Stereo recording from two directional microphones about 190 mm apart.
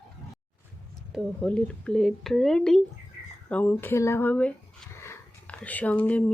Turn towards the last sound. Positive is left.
turn(degrees=5)  # may be behind; listen again after turning